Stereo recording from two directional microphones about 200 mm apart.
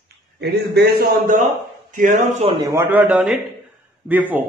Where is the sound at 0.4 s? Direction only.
55° right (ahead or behind).